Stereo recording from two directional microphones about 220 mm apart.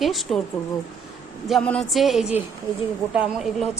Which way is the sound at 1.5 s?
5° left (ahead or behind).